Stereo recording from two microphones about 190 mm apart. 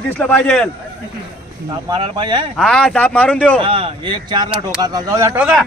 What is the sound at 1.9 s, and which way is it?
Speech, 25° right (ahead or behind).